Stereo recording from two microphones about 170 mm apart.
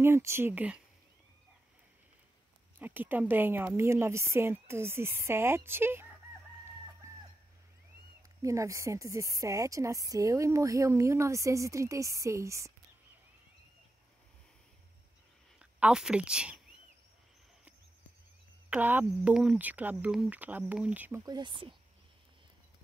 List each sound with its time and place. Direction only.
0.0 s speech: 15° right (ahead or behind)
2.8 s a woman's voice: 10° right (ahead or behind)
8.4 s a woman's voice: 20° right (ahead or behind)
15.6 s speech: 5° right (ahead or behind)
18.7 s a woman's voice: 10° right (ahead or behind)
21.3 s a woman's voice: 25° right (ahead or behind)